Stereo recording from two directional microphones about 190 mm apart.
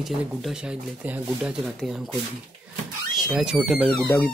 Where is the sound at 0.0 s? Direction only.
5° right (ahead or behind).